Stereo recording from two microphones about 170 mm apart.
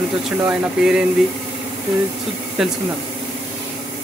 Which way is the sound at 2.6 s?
5° right (ahead or behind).